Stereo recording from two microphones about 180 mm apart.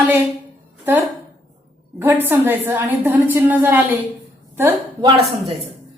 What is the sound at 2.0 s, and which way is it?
A woman's voice, 10° right (ahead or behind).